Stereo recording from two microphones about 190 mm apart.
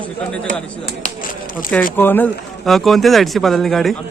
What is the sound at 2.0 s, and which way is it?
Speech, 10° left (ahead or behind).